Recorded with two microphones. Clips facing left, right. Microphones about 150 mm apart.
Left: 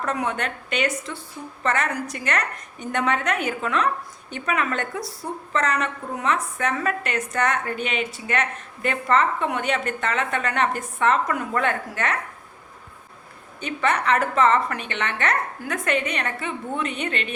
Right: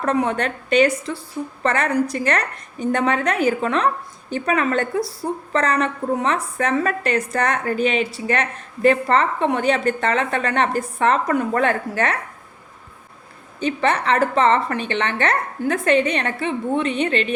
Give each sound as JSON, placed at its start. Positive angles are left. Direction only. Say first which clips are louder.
{"t": 0.0, "sound": "a woman's voice", "louder": "right 6 dB", "side_deg": -35}
{"t": 13.6, "sound": "a woman's voice", "louder": "right 4 dB", "side_deg": -30}